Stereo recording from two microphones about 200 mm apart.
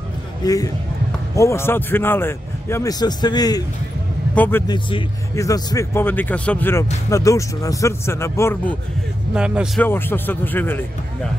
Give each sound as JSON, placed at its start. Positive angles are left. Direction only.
{"t": 0.4, "sound": "a man's voice", "side_deg": 15}
{"t": 4.6, "sound": "speech", "side_deg": 25}
{"t": 9.3, "sound": "a man's voice", "side_deg": -5}
{"t": 9.8, "sound": "speech", "side_deg": 10}